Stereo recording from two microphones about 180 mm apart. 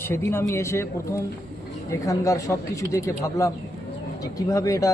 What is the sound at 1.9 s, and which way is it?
Speech, 15° left (ahead or behind).